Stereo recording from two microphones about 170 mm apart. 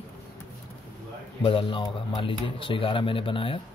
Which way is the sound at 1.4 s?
30° left (ahead or behind).